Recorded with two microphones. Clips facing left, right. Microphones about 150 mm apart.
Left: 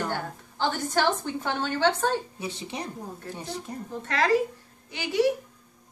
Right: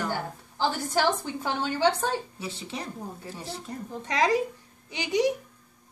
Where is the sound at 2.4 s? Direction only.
15° left (ahead or behind).